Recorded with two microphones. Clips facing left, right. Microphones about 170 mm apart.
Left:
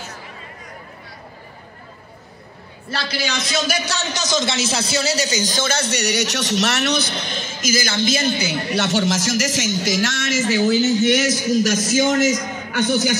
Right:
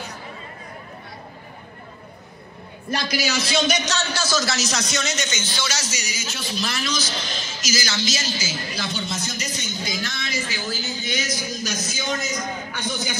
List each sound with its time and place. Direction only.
2.9 s a man's voice: 15° right (ahead or behind); by 10.4 s 90° left
10.5 s a man's voice: 70° left (ahead or behind)